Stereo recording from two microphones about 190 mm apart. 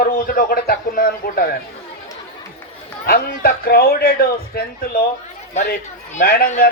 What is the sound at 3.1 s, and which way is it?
A man's voice, 55° left (ahead or behind).